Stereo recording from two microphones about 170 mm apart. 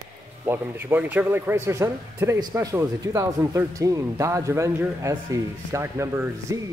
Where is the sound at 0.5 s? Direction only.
10° right (ahead or behind).